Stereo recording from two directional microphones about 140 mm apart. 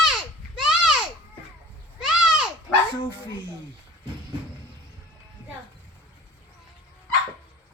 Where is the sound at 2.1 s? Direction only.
5° right (ahead or behind).